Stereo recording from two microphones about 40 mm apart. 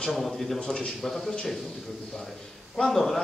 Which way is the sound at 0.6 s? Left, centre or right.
Centre.